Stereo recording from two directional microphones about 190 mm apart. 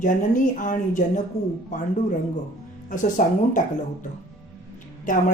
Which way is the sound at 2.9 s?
45° left (ahead or behind).